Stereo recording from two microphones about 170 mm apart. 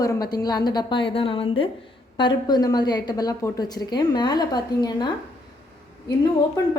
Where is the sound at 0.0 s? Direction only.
20° left (ahead or behind).